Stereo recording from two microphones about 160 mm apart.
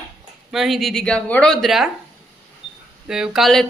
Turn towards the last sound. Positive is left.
turn(degrees=0)  # may be behind; listen again after turning